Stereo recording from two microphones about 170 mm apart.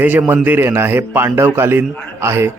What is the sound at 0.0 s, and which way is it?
A man's voice, 10° right (ahead or behind).